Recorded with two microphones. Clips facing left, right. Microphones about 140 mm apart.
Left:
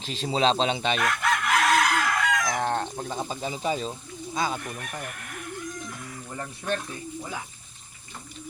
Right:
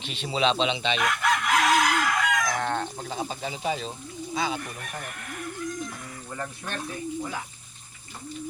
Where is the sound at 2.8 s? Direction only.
50° left (ahead or behind).